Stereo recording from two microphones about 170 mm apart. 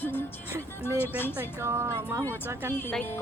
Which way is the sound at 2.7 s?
10° left (ahead or behind).